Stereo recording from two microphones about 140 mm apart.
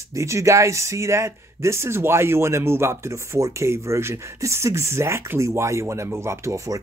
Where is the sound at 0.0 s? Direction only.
20° right (ahead or behind).